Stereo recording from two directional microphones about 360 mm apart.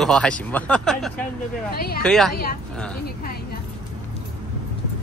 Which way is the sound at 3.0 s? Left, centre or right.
Left.